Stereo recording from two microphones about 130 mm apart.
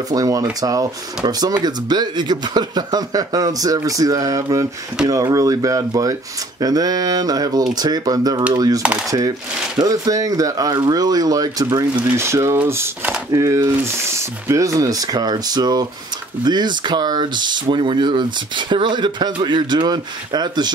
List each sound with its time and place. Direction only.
0.1 s speech: 30° right (ahead or behind)
12.1 s speech: 20° right (ahead or behind)